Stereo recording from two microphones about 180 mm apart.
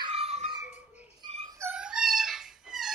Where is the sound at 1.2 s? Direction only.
35° right (ahead or behind).